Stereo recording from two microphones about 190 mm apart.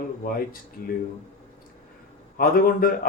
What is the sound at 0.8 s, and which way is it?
Speech, 50° left (ahead or behind).